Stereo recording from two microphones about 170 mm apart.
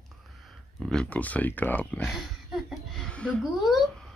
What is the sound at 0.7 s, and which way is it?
Speech, centre (ahead or behind).